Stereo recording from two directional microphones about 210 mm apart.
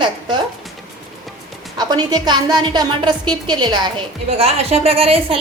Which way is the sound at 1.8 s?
20° right (ahead or behind).